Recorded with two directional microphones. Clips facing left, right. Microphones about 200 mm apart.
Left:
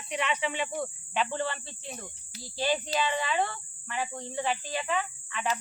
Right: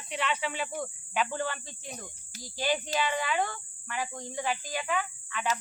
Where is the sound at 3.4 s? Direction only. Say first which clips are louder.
Left 1 dB; 5° left (ahead or behind).